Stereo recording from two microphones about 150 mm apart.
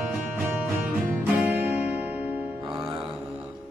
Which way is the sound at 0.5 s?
10° right (ahead or behind).